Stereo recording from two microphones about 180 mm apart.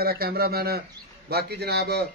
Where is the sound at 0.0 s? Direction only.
60° right (ahead or behind).